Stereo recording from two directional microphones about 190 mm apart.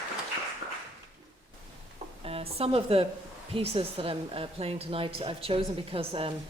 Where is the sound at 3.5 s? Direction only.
30° right (ahead or behind).